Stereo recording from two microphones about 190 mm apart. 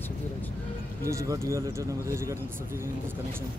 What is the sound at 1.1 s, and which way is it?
Speech, 15° right (ahead or behind).